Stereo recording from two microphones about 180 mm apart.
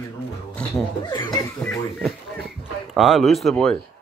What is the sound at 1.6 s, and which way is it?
Speech, 5° left (ahead or behind).